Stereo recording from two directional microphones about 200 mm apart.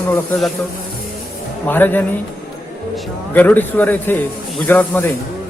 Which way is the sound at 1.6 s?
10° left (ahead or behind).